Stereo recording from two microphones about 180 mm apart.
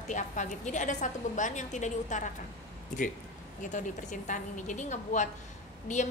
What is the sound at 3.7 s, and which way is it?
A woman's voice, 45° left (ahead or behind).